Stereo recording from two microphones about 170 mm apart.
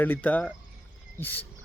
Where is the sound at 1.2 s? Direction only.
10° left (ahead or behind).